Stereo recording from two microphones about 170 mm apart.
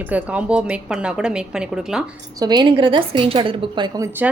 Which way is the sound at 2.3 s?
25° right (ahead or behind).